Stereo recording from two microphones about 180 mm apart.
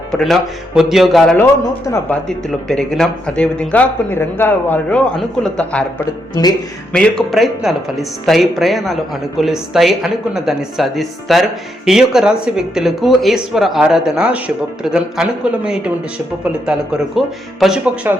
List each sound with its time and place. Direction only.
0.1 s speech: centre (ahead or behind)
1.4 s speech: 15° left (ahead or behind)
2.2 s speech: 5° left (ahead or behind)
6.4 s speech: 20° left (ahead or behind)
6.9 s speech: 5° left (ahead or behind)